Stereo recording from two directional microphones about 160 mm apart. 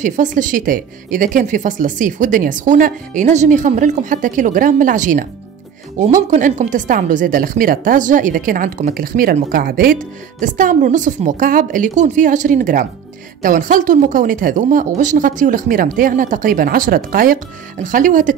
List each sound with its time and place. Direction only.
0.0 s a woman's voice: 50° right (ahead or behind)